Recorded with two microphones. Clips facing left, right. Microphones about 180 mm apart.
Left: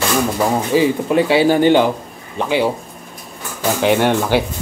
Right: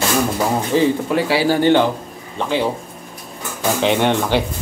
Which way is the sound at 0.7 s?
5° left (ahead or behind).